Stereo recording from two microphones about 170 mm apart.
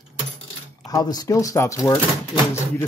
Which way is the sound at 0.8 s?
20° left (ahead or behind).